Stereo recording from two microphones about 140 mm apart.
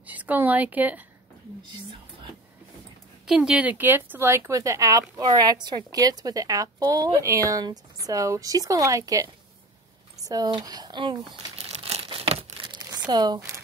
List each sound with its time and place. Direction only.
0.0 s a woman's voice: 10° right (ahead or behind)
3.3 s speech: 5° right (ahead or behind); by 11.1 s 35° right (ahead or behind)
11.3 s crumpling: 50° right (ahead or behind)
12.7 s a sound: 30° right (ahead or behind)